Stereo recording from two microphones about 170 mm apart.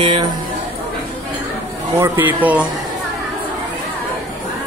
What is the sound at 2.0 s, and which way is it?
Speech, 15° right (ahead or behind).